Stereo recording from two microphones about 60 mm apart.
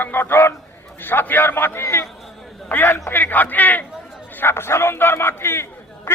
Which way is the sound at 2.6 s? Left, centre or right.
Left.